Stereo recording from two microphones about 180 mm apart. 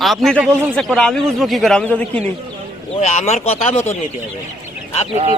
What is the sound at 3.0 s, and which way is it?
Speech, 40° left (ahead or behind).